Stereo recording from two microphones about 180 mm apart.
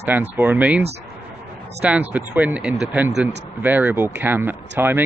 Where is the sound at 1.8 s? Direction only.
10° right (ahead or behind).